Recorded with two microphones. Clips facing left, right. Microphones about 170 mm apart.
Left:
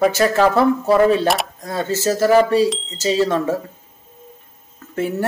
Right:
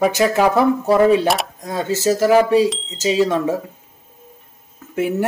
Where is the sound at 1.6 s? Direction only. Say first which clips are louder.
Right 1 dB; 15° right (ahead or behind).